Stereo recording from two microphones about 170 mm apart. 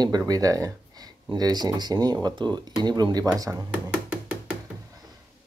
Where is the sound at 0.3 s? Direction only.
20° right (ahead or behind).